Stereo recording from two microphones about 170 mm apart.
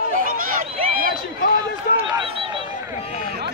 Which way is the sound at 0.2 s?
55° right (ahead or behind).